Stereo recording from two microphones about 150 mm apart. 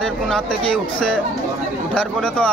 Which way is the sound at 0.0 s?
5° left (ahead or behind).